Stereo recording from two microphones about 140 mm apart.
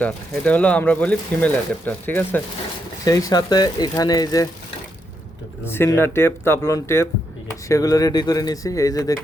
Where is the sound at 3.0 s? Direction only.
25° left (ahead or behind).